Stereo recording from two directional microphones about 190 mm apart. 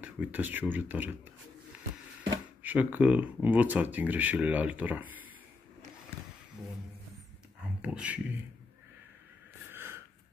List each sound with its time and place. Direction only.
0.0 s speech: 10° right (ahead or behind)
2.6 s speech: 10° right (ahead or behind)
7.8 s speech: 5° right (ahead or behind)
9.7 s snort: 10° right (ahead or behind)